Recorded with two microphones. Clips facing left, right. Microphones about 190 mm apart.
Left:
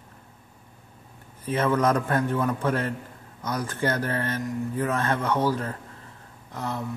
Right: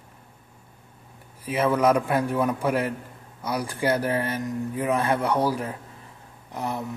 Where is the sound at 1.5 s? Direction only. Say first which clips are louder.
Right 2 dB; 10° right (ahead or behind).